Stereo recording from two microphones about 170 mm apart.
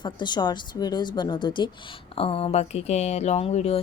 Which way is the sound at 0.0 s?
25° left (ahead or behind).